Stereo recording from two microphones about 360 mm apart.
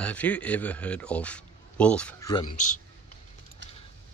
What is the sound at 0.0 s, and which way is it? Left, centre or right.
A man's voice, centre.